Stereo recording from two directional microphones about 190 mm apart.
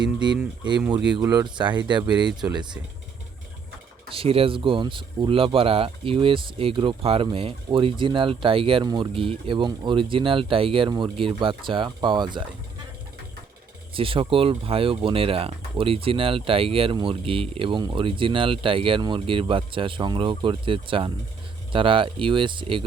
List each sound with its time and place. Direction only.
1.2 s speech: 20° right (ahead or behind)
4.1 s speech: 30° right (ahead or behind)
13.9 s speech: 30° right (ahead or behind)